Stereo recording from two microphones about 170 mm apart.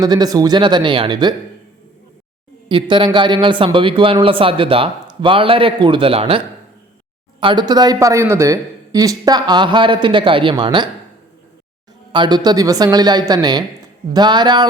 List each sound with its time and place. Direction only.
0.0 s speech: 25° right (ahead or behind)
2.6 s speech: 30° right (ahead or behind)
12.1 s speech: 25° right (ahead or behind)